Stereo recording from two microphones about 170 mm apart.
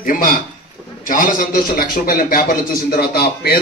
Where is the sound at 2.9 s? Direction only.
65° left (ahead or behind).